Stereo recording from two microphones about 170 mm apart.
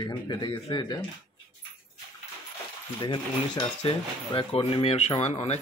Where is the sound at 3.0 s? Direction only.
25° left (ahead or behind).